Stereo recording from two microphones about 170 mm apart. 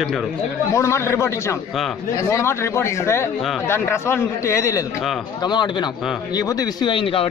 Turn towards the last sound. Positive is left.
turn(degrees=30)  # may be behind; listen again after turning